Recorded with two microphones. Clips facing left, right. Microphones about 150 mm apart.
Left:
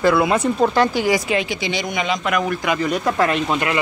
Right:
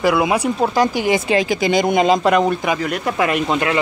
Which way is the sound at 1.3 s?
40° right (ahead or behind).